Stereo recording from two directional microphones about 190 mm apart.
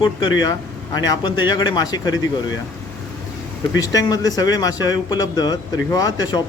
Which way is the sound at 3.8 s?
20° left (ahead or behind).